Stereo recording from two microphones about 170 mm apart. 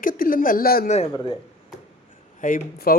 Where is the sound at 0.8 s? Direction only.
40° left (ahead or behind).